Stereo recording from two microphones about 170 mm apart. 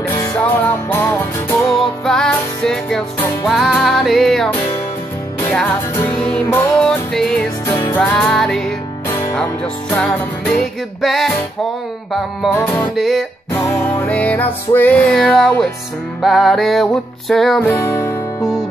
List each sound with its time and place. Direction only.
0.0 s music: 15° left (ahead or behind); by 4.5 s centre (ahead or behind)
5.5 s music: 10° left (ahead or behind)
7.6 s music: 15° left (ahead or behind)
8.0 s music: 5° left (ahead or behind)
9.0 s music: 15° left (ahead or behind); by 11.3 s centre (ahead or behind)
12.5 s music: 15° left (ahead or behind)
12.9 s music: centre (ahead or behind)
13.7 s music: 15° left (ahead or behind)
17.6 s music: 15° left (ahead or behind)